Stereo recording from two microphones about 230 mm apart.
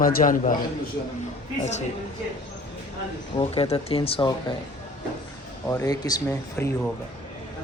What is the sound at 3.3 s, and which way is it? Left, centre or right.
Speech, left.